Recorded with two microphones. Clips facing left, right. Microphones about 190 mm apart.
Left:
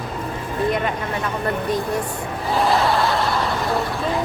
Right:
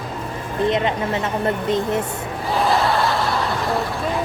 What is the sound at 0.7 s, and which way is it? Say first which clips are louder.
Speech: right 5 dB; 25° right (ahead or behind).